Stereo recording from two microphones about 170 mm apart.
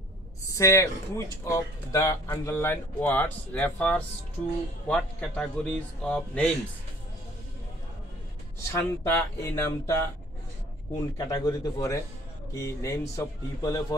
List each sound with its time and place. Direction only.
0.5 s a man's voice: 15° left (ahead or behind)
8.7 s speech: 15° left (ahead or behind)
11.1 s speech: 20° left (ahead or behind)